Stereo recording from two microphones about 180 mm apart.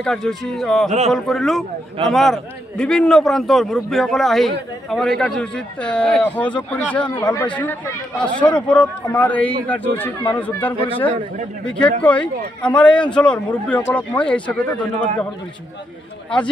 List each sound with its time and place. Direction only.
0.0 s a man's voice: centre (ahead or behind)
0.8 s a man's voice: 40° right (ahead or behind)
1.1 s a man's voice: centre (ahead or behind)